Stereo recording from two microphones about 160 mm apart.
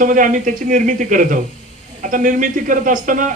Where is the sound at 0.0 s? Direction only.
55° right (ahead or behind).